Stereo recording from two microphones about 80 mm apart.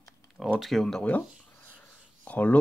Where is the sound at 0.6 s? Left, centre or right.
Centre.